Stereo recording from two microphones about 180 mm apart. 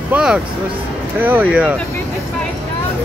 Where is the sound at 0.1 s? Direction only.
5° right (ahead or behind).